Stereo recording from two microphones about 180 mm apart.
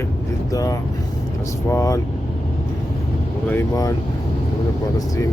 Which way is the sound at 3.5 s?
15° left (ahead or behind).